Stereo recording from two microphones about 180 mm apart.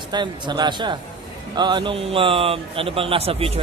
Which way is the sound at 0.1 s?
25° right (ahead or behind).